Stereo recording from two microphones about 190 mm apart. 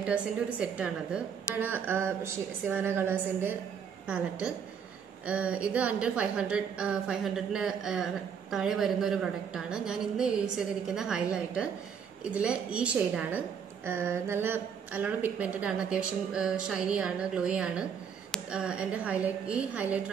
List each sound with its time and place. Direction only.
0.0 s a woman's voice: 5° right (ahead or behind)
5.2 s a woman's voice: 5° right (ahead or behind)